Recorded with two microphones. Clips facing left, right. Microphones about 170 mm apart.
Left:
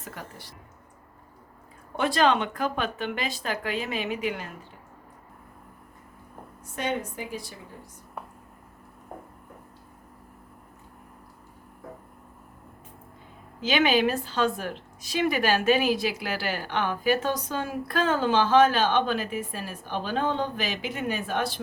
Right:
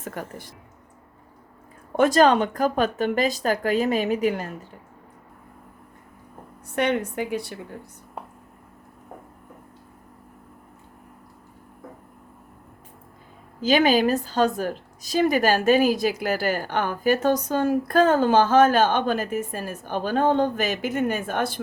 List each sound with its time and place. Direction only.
0.0 s a woman's voice: 50° right (ahead or behind)
2.0 s speech: 45° right (ahead or behind)
6.7 s a woman's voice: 70° right (ahead or behind)
13.6 s a woman's voice: 40° right (ahead or behind)